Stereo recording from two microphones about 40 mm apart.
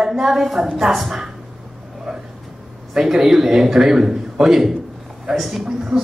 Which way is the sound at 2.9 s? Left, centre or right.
Centre.